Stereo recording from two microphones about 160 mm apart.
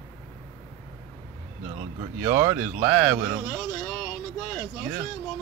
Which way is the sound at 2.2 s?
15° right (ahead or behind).